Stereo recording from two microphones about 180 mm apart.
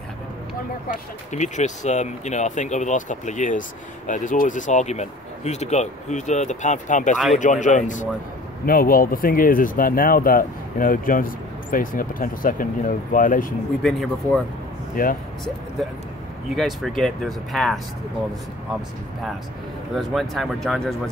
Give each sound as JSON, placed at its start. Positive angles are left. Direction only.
{"t": 0.8, "sound": "speech", "side_deg": 40}
{"t": 13.8, "sound": "speech", "side_deg": 0}
{"t": 15.0, "sound": "speech", "side_deg": 55}
{"t": 16.5, "sound": "speech", "side_deg": 0}
{"t": 20.0, "sound": "speech", "side_deg": 0}